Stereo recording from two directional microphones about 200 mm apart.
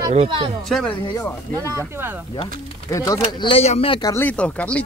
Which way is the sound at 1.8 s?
10° right (ahead or behind).